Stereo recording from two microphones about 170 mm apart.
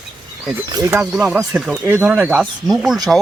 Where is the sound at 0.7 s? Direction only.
20° right (ahead or behind).